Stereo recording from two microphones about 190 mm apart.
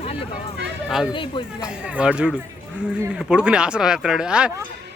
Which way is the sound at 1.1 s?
25° left (ahead or behind).